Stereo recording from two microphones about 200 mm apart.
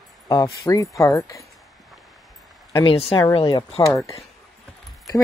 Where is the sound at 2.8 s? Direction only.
30° left (ahead or behind).